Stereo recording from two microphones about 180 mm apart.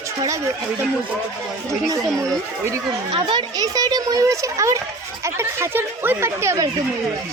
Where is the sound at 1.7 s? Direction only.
15° right (ahead or behind).